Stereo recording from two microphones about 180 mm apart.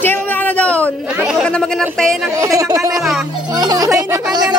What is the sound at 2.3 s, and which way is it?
Speech, 20° right (ahead or behind).